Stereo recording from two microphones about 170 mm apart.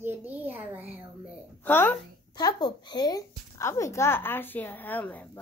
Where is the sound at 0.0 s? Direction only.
10° right (ahead or behind).